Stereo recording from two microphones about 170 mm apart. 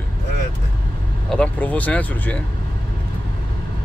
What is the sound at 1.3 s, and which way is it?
Speech, 10° left (ahead or behind).